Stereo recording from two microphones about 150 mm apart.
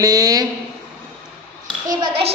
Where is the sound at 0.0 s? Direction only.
25° right (ahead or behind).